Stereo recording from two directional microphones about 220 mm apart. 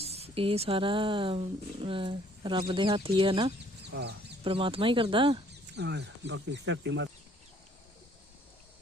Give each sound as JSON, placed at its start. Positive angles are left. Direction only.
{"t": 0.0, "sound": "speech", "side_deg": -30}
{"t": 3.8, "sound": "speech", "side_deg": -50}
{"t": 4.4, "sound": "speech", "side_deg": -25}
{"t": 5.7, "sound": "speech", "side_deg": -50}